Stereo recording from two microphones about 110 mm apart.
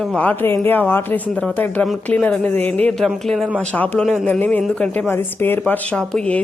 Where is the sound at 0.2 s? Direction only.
15° left (ahead or behind).